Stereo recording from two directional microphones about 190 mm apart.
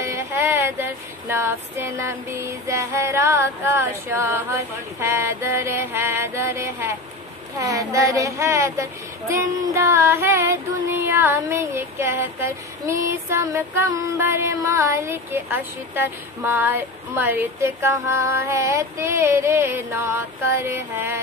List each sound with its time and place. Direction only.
0.0 s female singing: 15° right (ahead or behind)
2.6 s music: 15° right (ahead or behind)